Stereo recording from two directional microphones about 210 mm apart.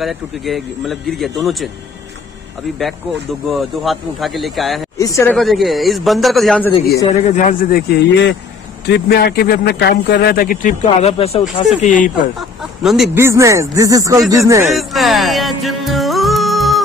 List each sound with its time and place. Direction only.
0.0 s a man's voice: centre (ahead or behind)
3.4 s a man's voice: centre (ahead or behind)
4.9 s speech: 15° left (ahead or behind)
5.3 s a man's voice: centre (ahead or behind)
7.2 s speech: 35° left (ahead or behind)
7.9 s a man's voice: 55° left (ahead or behind); by 12.1 s 35° left (ahead or behind)
12.4 s chicken: centre (ahead or behind)
13.2 s speech: 15° right (ahead or behind)
14.8 s music: centre (ahead or behind)